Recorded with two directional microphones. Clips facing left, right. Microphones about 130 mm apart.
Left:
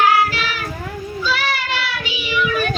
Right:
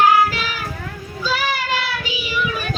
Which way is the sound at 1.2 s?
40° right (ahead or behind).